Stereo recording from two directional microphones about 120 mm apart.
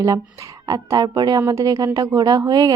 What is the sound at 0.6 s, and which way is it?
A woman's voice, 30° right (ahead or behind).